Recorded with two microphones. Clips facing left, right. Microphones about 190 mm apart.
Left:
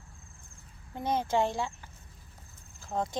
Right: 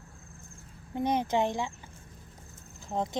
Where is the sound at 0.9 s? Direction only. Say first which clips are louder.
Right 1 dB; 15° right (ahead or behind).